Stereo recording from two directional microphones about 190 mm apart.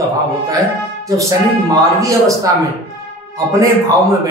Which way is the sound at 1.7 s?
15° right (ahead or behind).